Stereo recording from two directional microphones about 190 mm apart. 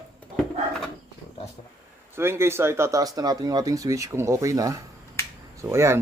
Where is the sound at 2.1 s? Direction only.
10° right (ahead or behind).